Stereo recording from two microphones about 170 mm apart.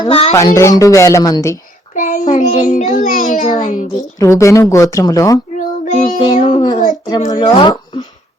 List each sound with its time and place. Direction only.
0.0 s speech: 35° left (ahead or behind)
0.3 s speech: 20° left (ahead or behind)
2.0 s a child's voice: 50° left (ahead or behind)
4.2 s a woman's voice: 20° left (ahead or behind)
5.5 s child singing: 45° left (ahead or behind)
6.4 s speech: 30° left (ahead or behind)